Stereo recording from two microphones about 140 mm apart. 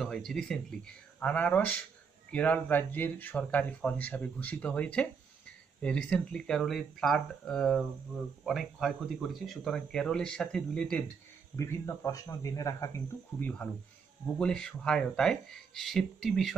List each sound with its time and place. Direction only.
0.0 s speech: centre (ahead or behind)
11.5 s speech: 20° left (ahead or behind)
14.4 s speech: 5° left (ahead or behind)